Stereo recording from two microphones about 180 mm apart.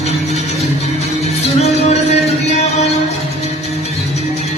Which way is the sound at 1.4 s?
35° left (ahead or behind).